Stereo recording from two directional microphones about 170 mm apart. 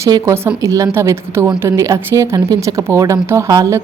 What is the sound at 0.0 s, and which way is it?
Speech, 20° right (ahead or behind).